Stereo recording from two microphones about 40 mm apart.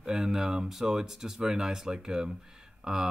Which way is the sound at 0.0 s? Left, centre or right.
Centre.